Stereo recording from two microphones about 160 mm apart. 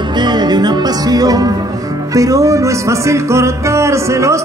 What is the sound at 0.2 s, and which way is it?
Music, 25° right (ahead or behind).